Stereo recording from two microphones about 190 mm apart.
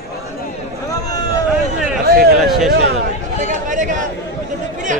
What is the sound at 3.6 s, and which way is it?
Speech, 40° right (ahead or behind).